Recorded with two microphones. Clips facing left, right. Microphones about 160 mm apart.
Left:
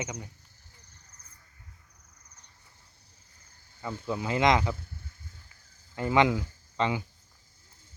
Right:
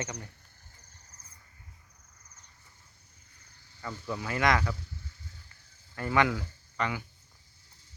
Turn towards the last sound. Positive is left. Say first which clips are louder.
# left 4 dB
turn(degrees=20)  # may be behind; listen again after turning